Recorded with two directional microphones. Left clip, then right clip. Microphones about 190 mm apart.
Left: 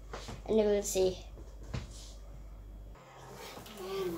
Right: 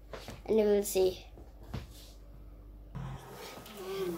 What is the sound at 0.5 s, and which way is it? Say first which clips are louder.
Speech: right 1 dB; 25° right (ahead or behind).